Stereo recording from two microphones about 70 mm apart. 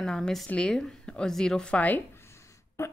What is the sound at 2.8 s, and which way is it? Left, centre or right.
Speech, left.